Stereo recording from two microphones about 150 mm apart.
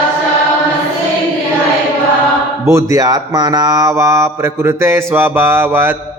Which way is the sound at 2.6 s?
20° right (ahead or behind).